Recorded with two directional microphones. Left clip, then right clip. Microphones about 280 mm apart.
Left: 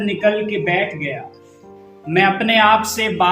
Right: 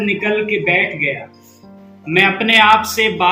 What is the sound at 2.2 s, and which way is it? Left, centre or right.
A man's voice, centre.